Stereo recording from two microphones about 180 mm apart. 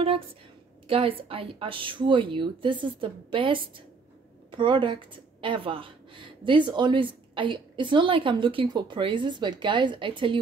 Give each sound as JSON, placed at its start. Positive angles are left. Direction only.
{"t": 0.8, "sound": "speech", "side_deg": -30}